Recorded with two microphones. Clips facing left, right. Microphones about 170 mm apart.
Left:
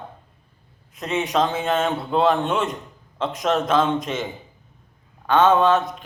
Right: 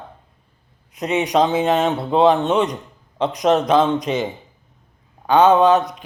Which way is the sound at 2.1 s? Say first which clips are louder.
Right 5 dB; centre (ahead or behind).